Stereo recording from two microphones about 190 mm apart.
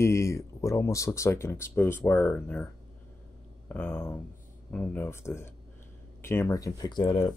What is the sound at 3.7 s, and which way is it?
Speech, 10° left (ahead or behind).